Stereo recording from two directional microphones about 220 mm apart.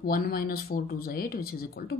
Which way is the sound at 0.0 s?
45° left (ahead or behind).